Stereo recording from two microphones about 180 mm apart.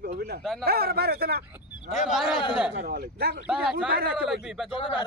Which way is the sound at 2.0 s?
Centre (ahead or behind).